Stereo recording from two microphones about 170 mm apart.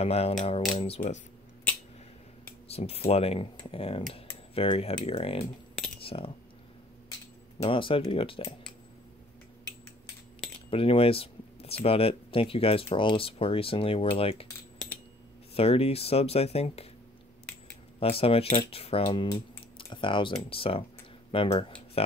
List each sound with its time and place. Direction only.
0.0 s speech: 35° left (ahead or behind)
2.7 s speech: 35° left (ahead or behind)
5.9 s cutlery: 35° left (ahead or behind)
7.5 s speech: 30° left (ahead or behind)
10.7 s speech: 35° left (ahead or behind)
15.5 s speech: 35° left (ahead or behind)
17.9 s speech: 35° left (ahead or behind)